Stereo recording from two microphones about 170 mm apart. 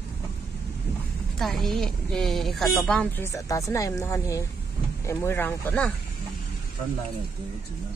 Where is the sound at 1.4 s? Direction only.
Centre (ahead or behind).